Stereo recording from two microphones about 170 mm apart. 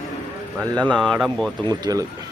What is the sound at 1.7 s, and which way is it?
Speech, 20° right (ahead or behind).